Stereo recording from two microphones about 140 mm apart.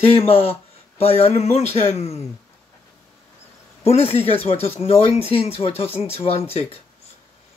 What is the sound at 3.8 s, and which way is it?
Speech, 45° left (ahead or behind).